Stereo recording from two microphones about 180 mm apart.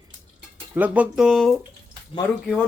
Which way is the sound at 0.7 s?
10° right (ahead or behind).